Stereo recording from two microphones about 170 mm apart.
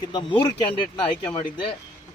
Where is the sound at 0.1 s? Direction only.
25° left (ahead or behind).